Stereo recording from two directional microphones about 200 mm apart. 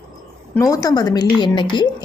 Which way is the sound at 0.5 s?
15° left (ahead or behind).